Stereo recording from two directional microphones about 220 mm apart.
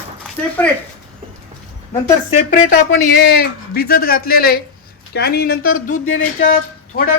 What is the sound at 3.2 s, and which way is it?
A man's voice, 45° left (ahead or behind).